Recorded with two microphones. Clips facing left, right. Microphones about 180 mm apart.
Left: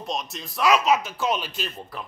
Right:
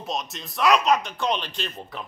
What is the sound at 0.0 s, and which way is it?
A man's voice, centre (ahead or behind).